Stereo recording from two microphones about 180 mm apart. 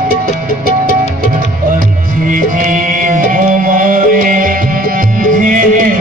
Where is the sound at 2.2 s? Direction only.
50° right (ahead or behind).